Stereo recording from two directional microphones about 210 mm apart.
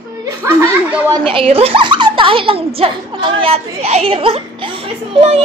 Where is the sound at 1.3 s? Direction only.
25° right (ahead or behind).